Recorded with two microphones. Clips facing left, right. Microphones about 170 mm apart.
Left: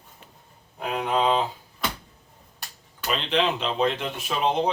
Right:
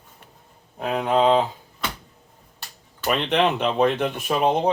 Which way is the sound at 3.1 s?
60° right (ahead or behind).